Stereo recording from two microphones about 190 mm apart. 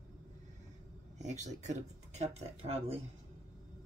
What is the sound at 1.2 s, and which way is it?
Speech, 35° right (ahead or behind).